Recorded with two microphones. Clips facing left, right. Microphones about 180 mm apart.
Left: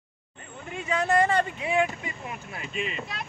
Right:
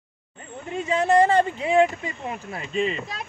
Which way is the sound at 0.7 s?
25° right (ahead or behind).